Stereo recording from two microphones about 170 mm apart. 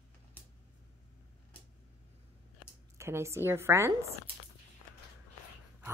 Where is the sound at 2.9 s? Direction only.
15° right (ahead or behind).